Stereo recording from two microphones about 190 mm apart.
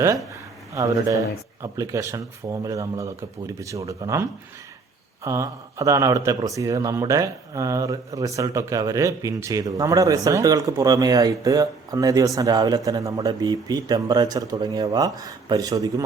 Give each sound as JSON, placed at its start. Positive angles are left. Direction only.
{"t": 0.7, "sound": "speech", "side_deg": -15}